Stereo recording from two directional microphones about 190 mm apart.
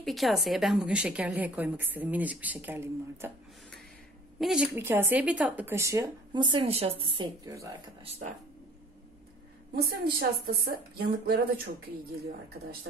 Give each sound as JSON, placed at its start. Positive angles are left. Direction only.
{"t": 0.0, "sound": "a woman's voice", "side_deg": 0}
{"t": 4.4, "sound": "a woman's voice", "side_deg": 0}
{"t": 4.7, "sound": "a woman's voice", "side_deg": -10}
{"t": 7.4, "sound": "a woman's voice", "side_deg": -15}
{"t": 8.0, "sound": "speech", "side_deg": -30}
{"t": 10.1, "sound": "speech", "side_deg": -55}